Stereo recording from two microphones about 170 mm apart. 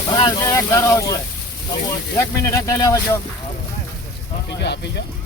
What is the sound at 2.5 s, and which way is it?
Speech, 15° left (ahead or behind).